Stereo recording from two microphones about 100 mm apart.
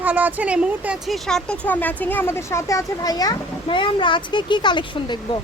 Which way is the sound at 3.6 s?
55° left (ahead or behind).